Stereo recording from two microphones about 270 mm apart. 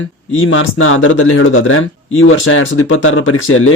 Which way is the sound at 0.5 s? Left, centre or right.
Left.